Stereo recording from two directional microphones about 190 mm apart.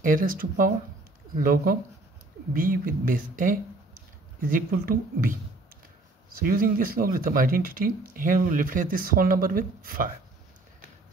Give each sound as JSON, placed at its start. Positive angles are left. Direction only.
{"t": 0.0, "sound": "speech", "side_deg": -45}